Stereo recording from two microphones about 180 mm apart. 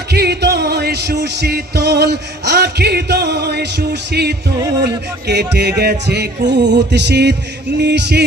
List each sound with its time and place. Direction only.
0.1 s music: 65° right (ahead or behind)